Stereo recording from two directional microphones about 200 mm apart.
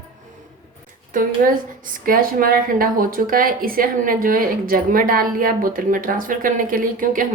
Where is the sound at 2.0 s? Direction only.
45° right (ahead or behind).